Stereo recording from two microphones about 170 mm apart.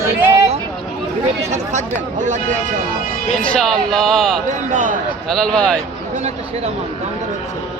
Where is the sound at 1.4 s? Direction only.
45° right (ahead or behind).